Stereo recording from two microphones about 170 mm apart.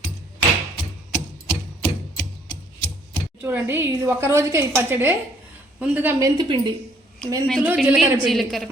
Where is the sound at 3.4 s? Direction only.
15° right (ahead or behind).